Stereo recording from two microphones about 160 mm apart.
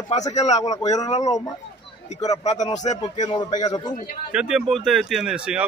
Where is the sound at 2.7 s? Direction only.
45° left (ahead or behind).